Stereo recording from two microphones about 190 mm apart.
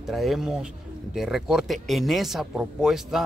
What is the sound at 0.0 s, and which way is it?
A man's voice, centre (ahead or behind).